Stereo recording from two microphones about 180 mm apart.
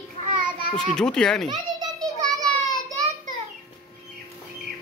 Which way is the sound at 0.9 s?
5° left (ahead or behind).